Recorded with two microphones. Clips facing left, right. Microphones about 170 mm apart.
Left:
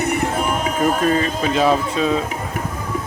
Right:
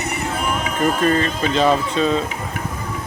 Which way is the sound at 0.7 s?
5° left (ahead or behind).